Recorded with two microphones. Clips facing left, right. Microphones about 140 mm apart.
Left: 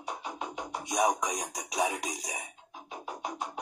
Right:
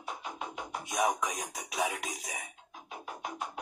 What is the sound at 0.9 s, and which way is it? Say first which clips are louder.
Speech: left 3 dB; 35° left (ahead or behind).